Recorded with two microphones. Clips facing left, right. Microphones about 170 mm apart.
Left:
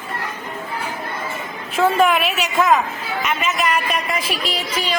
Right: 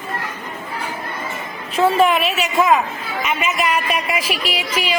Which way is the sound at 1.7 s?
Centre (ahead or behind).